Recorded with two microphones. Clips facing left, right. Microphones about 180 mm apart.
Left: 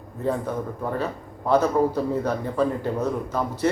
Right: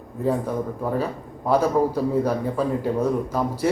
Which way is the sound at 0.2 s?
10° right (ahead or behind).